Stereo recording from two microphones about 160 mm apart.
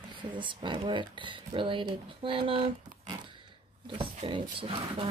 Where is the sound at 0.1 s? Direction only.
30° right (ahead or behind).